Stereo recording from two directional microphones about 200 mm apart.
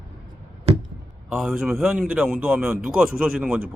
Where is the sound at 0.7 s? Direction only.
30° right (ahead or behind).